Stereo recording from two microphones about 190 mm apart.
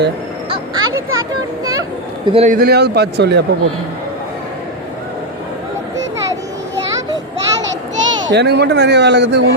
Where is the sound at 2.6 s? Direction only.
55° right (ahead or behind).